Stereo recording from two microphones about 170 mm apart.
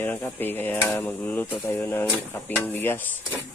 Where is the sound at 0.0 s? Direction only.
10° left (ahead or behind).